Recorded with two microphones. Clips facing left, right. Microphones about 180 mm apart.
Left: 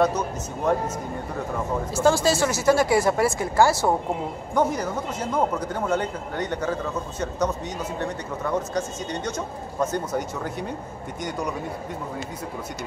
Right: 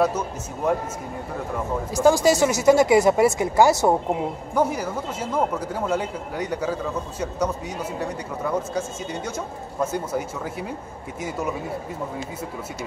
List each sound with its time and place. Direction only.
2.0 s speech: 15° right (ahead or behind)
4.6 s speech: 5° right (ahead or behind)